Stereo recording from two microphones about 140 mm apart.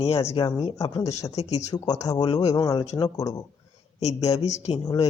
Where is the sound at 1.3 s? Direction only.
50° left (ahead or behind).